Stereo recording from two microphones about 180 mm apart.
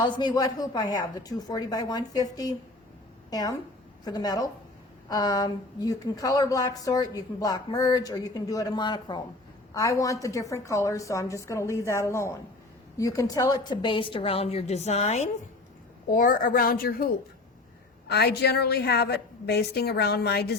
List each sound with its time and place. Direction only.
0.0 s a woman's voice: 25° left (ahead or behind)
16.0 s a woman's voice: 50° left (ahead or behind)
18.1 s a woman's voice: 65° left (ahead or behind)